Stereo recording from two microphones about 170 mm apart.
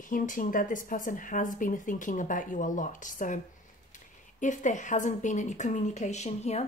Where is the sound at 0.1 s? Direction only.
55° left (ahead or behind).